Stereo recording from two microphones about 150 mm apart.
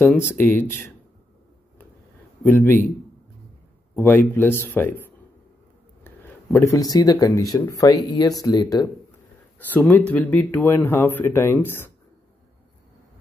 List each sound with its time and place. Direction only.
0.3 s speech: 15° left (ahead or behind)
2.4 s speech: 15° left (ahead or behind)
3.9 s speech: 15° left (ahead or behind)
6.0 s speech: 15° left (ahead or behind)
9.6 s speech: 10° left (ahead or behind)